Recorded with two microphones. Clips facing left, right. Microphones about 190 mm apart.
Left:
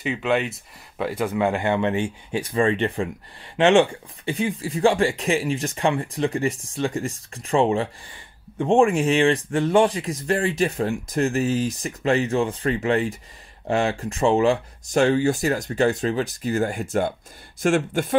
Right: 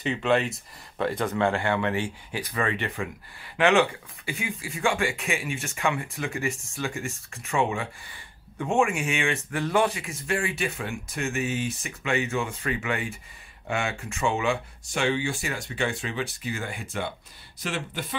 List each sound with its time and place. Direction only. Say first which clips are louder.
0.0 s a man's voice: left 1 dB; 5° left (ahead or behind); by 18.0 s 50° left (ahead or behind)